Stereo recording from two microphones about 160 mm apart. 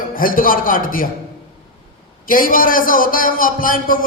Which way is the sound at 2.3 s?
60° left (ahead or behind).